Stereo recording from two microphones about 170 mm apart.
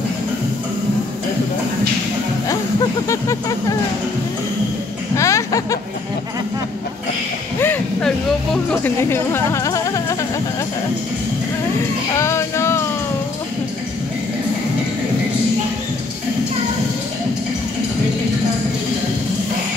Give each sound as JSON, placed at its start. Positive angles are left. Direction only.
{"t": 3.1, "sound": "music", "side_deg": 20}
{"t": 5.1, "sound": "music", "side_deg": 20}
{"t": 7.6, "sound": "a sound", "side_deg": 10}
{"t": 8.6, "sound": "speech", "side_deg": 15}
{"t": 12.2, "sound": "music", "side_deg": 15}